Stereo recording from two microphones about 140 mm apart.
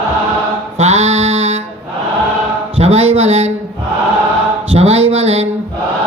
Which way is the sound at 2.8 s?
45° right (ahead or behind).